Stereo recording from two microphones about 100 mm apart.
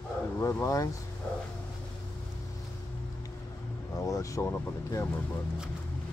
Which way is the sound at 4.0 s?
30° left (ahead or behind).